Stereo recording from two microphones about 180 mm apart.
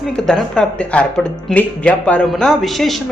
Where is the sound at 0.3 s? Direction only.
5° left (ahead or behind).